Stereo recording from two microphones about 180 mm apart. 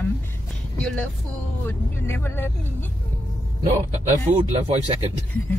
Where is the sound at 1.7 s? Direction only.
10° left (ahead or behind).